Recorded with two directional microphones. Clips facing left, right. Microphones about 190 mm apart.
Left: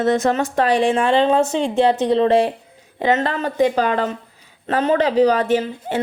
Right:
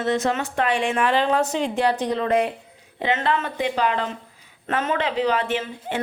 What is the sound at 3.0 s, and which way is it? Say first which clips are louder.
Speech: left 4 dB; 40° left (ahead or behind).